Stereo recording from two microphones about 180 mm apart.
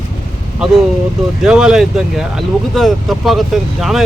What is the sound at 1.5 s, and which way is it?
Speech, 5° right (ahead or behind).